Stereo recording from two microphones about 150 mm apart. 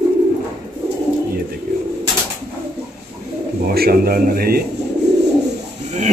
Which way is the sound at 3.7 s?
90° right.